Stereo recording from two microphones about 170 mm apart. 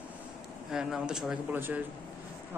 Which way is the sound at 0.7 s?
5° right (ahead or behind).